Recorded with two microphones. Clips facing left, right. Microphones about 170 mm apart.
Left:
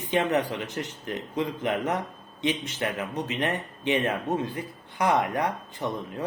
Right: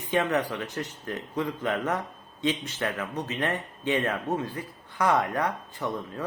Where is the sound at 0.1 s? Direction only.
20° left (ahead or behind).